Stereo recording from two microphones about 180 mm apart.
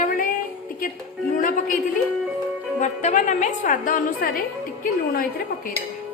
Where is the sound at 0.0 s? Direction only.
50° left (ahead or behind).